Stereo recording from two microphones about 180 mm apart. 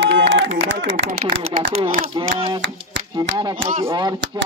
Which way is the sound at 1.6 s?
35° right (ahead or behind).